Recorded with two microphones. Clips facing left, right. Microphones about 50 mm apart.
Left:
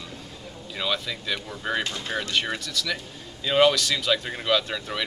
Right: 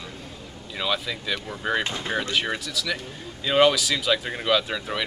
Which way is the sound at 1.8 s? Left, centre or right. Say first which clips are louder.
Right 2 dB; centre.